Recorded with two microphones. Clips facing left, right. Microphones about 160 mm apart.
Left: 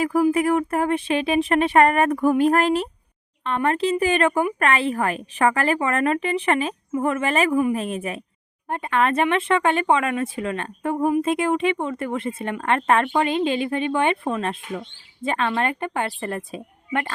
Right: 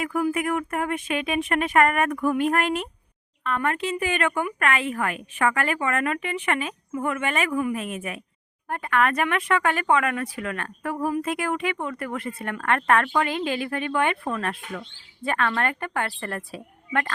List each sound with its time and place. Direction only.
0.0 s a woman's voice: 30° left (ahead or behind)